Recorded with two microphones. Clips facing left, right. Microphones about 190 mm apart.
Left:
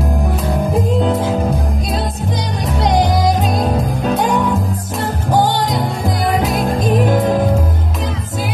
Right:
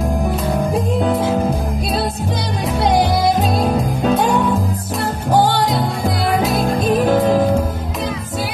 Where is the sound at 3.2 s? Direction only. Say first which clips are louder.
Even; 15° left (ahead or behind).